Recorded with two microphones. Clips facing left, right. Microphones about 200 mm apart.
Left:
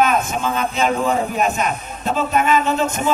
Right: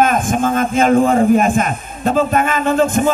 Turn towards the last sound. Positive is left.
turn(degrees=-50)  # may be behind; listen again after turning